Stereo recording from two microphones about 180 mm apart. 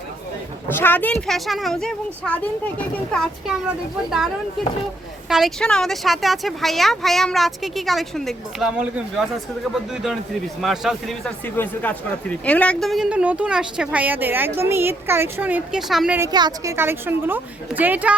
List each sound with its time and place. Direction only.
0.7 s speech: 10° left (ahead or behind)
5.3 s speech: centre (ahead or behind)
10.6 s speech: centre (ahead or behind)
16.2 s a woman's voice: 20° right (ahead or behind)